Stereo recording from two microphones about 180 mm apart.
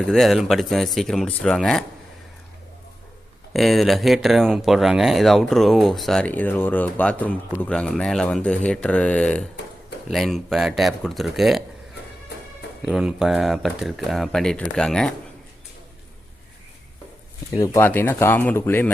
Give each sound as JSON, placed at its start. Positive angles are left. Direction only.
{"t": 0.0, "sound": "speech", "side_deg": 0}
{"t": 3.5, "sound": "speech", "side_deg": 0}
{"t": 12.8, "sound": "speech", "side_deg": -5}
{"t": 17.6, "sound": "speech", "side_deg": 15}